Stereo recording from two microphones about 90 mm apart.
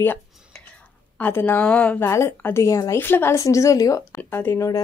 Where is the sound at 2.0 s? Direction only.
30° left (ahead or behind).